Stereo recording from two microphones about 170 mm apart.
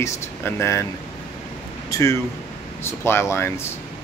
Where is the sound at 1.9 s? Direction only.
20° left (ahead or behind).